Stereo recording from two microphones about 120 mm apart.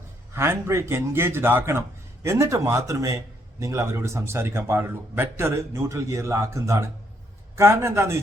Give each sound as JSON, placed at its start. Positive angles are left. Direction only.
{"t": 0.3, "sound": "speech", "side_deg": -20}